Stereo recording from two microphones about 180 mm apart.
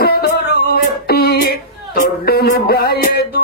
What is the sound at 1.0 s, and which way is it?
Speech, 60° left (ahead or behind).